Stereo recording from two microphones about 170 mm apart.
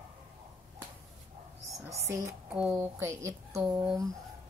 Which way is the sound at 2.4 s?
5° right (ahead or behind).